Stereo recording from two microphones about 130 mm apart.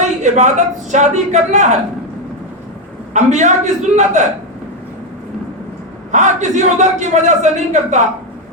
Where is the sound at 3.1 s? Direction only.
70° right (ahead or behind).